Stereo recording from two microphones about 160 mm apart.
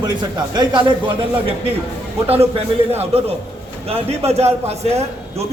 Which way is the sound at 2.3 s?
40° right (ahead or behind).